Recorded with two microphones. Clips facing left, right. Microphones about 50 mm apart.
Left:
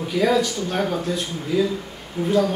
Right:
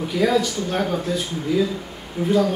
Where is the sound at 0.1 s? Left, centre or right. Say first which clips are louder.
Even; centre.